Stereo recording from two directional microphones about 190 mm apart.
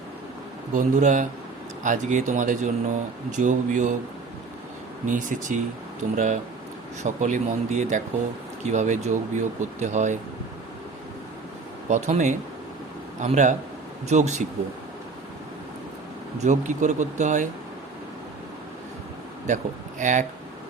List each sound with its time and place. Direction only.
0.7 s speech: 40° right (ahead or behind)
5.0 s speech: 45° right (ahead or behind)
11.9 s speech: 40° right (ahead or behind)
16.4 s speech: 40° right (ahead or behind)
20.0 s speech: 40° right (ahead or behind)